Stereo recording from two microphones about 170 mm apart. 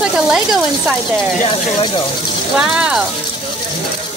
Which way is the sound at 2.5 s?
5° right (ahead or behind).